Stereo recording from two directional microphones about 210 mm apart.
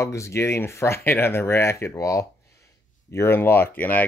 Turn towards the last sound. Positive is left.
turn(degrees=10)  # may be behind; listen again after turning